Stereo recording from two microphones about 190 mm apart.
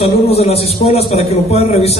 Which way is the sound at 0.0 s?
30° left (ahead or behind).